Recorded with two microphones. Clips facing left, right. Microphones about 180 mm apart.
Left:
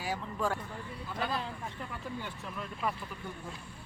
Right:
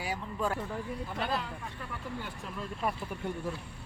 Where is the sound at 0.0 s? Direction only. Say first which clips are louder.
Even; 5° right (ahead or behind).